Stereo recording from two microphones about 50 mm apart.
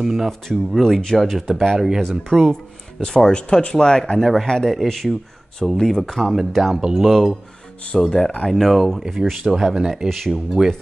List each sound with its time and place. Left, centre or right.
0.0 s speech: centre
0.3 s speech: centre
4.5 s speech: centre
6.2 s speech: centre
7.8 s speech: centre
8.5 s speech: centre